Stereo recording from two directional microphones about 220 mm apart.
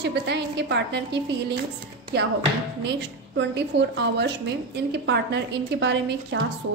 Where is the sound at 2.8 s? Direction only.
50° right (ahead or behind).